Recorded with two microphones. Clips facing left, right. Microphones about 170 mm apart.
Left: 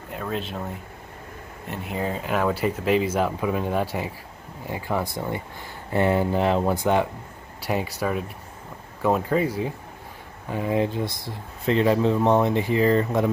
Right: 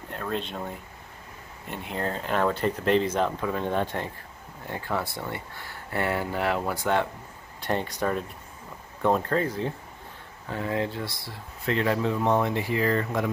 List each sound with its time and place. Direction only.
0.1 s speech: 5° left (ahead or behind)
1.7 s speech: centre (ahead or behind)
7.6 s speech: 5° left (ahead or behind); by 13.3 s 25° left (ahead or behind)